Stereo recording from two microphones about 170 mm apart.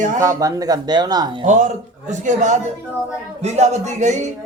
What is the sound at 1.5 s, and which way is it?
A man's voice, 45° right (ahead or behind).